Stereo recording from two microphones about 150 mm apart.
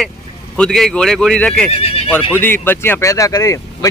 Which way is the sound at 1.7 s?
45° left (ahead or behind).